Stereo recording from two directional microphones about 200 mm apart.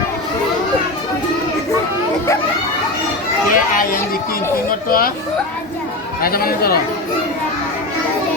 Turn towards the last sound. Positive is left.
turn(degrees=50)  # may be behind; listen again after turning